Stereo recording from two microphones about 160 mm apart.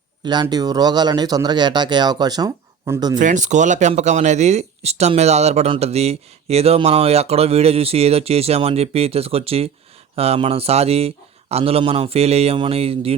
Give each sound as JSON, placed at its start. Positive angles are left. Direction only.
{"t": 0.4, "sound": "speech", "side_deg": -25}
{"t": 3.2, "sound": "speech", "side_deg": -50}